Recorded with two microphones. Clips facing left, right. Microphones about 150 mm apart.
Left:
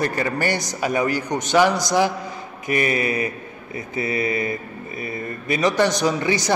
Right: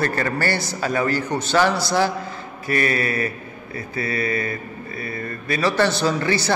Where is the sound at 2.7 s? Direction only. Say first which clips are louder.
Left 1 dB; 15° left (ahead or behind).